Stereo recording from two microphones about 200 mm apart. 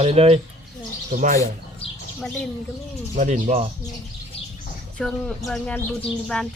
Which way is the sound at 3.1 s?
35° right (ahead or behind).